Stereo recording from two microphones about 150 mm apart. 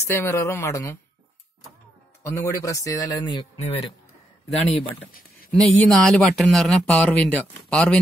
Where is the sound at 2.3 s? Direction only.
20° left (ahead or behind); by 3.9 s 40° left (ahead or behind).